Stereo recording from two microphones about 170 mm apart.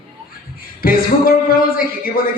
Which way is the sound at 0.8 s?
60° left (ahead or behind).